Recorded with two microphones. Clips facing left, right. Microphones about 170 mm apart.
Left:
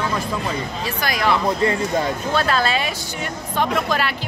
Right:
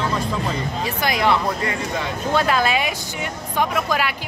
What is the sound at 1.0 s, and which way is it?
Speech, 20° right (ahead or behind).